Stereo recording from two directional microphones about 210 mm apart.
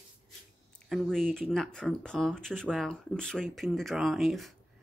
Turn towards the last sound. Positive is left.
turn(degrees=0)  # may be behind; listen again after turning